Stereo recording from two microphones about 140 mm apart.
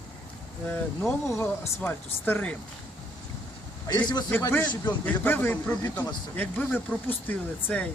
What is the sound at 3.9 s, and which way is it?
Speech, 30° left (ahead or behind).